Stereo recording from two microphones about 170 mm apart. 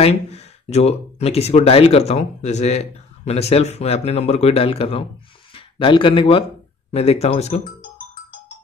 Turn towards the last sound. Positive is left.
turn(degrees=40)  # may be behind; listen again after turning